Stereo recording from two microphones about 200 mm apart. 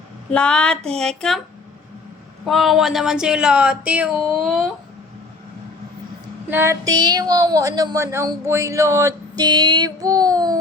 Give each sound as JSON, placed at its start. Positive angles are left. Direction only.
{"t": 0.3, "sound": "speech", "side_deg": 5}
{"t": 2.4, "sound": "speech", "side_deg": 0}
{"t": 6.5, "sound": "speech", "side_deg": -15}